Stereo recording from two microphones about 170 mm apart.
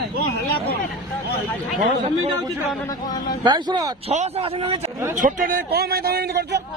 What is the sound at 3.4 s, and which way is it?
Speech, 25° right (ahead or behind).